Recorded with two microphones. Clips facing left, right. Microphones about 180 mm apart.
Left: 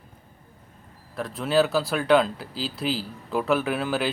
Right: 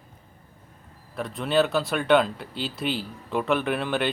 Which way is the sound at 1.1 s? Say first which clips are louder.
Left 1 dB; centre (ahead or behind).